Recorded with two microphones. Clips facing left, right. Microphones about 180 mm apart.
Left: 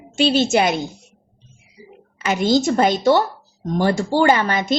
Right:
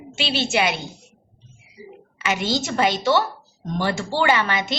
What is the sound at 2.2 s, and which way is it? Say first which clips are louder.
A woman's voice: left 6 dB; 40° left (ahead or behind).